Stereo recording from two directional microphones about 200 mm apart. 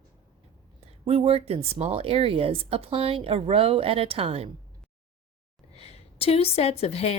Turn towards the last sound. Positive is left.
turn(degrees=30)  # may be behind; listen again after turning